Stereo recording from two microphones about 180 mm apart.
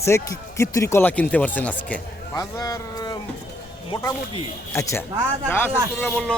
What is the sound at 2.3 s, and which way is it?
Speech, 20° left (ahead or behind).